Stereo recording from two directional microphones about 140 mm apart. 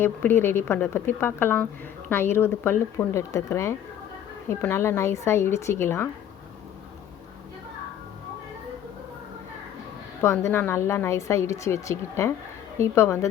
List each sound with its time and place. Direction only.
0.0 s a woman's voice: 15° left (ahead or behind)
10.2 s a woman's voice: 20° left (ahead or behind)